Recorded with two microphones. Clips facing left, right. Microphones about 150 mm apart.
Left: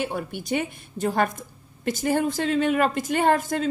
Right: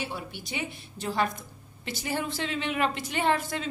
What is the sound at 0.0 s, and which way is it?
A woman's voice, 50° left (ahead or behind).